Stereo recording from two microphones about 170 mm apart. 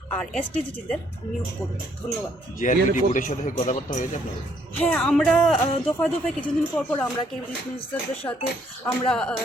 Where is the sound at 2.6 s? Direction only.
50° left (ahead or behind).